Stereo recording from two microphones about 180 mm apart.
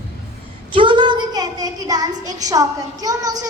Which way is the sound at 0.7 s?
25° right (ahead or behind).